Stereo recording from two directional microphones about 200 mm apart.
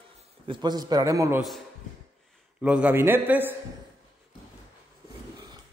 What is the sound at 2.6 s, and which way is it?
Speech, 5° right (ahead or behind).